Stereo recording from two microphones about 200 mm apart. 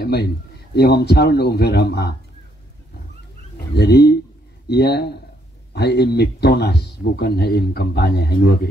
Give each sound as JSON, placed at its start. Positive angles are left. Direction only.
{"t": 0.0, "sound": "a man's voice", "side_deg": 55}
{"t": 3.5, "sound": "speech", "side_deg": 55}